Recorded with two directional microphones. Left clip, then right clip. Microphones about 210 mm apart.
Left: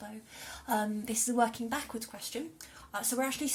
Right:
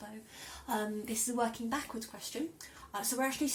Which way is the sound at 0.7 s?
40° left (ahead or behind).